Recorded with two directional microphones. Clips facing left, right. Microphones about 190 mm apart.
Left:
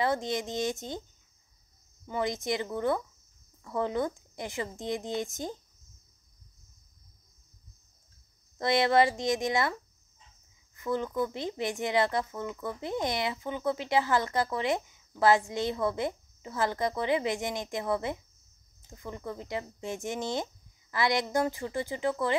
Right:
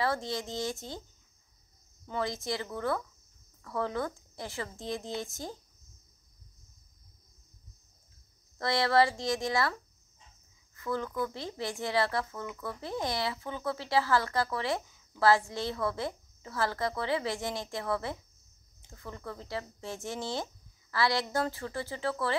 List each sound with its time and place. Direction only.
0.0 s speech: 20° left (ahead or behind)
2.0 s speech: 15° left (ahead or behind)
8.5 s speech: 20° left (ahead or behind)
10.8 s speech: 20° left (ahead or behind)